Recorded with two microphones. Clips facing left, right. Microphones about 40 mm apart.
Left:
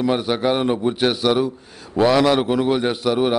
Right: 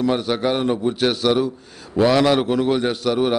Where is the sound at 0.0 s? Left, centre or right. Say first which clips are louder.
Even; centre.